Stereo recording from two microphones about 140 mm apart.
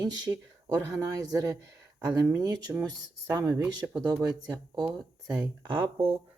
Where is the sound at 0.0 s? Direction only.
30° right (ahead or behind).